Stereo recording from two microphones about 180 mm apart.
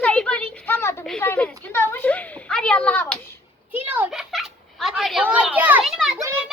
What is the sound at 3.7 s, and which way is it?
Cat, 10° right (ahead or behind).